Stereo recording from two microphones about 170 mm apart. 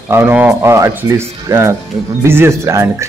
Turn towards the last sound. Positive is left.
turn(degrees=-15)  # may be behind; listen again after turning